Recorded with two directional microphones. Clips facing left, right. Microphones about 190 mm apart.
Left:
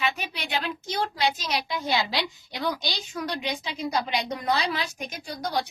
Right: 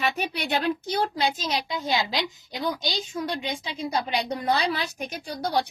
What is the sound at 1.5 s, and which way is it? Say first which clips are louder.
A woman's voice: even; 20° right (ahead or behind).